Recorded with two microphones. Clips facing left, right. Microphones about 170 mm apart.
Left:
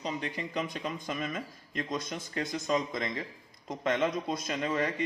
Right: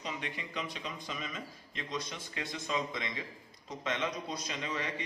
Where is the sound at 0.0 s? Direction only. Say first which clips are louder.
Left 5 dB; 35° left (ahead or behind).